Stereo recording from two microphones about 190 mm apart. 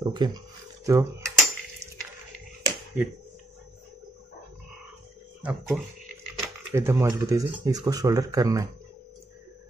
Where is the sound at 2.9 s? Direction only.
10° right (ahead or behind).